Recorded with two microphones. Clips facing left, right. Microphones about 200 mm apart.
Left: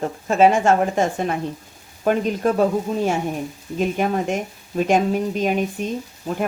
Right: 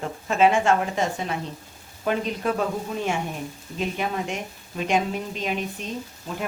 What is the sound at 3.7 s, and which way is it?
Speech, 45° left (ahead or behind).